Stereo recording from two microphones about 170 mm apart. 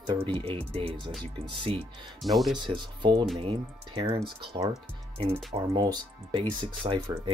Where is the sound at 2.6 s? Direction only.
30° right (ahead or behind).